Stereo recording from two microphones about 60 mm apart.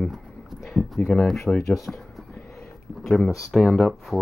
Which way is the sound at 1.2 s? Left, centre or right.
Centre.